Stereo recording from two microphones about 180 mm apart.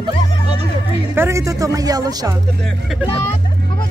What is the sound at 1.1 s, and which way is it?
Speech, 15° right (ahead or behind).